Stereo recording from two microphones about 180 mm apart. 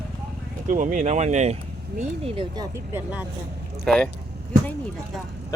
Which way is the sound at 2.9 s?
10° right (ahead or behind).